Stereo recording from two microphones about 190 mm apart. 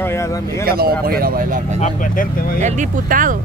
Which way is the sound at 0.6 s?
50° right (ahead or behind).